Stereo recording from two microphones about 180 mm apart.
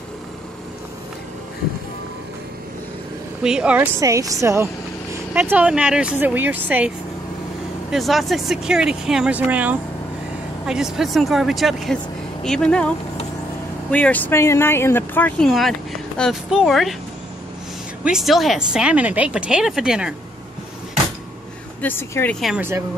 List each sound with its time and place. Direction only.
3.4 s speech: 5° right (ahead or behind)
7.9 s speech: centre (ahead or behind)
18.0 s speech: centre (ahead or behind)
21.8 s speech: 10° left (ahead or behind)
22.4 s speech: 5° right (ahead or behind)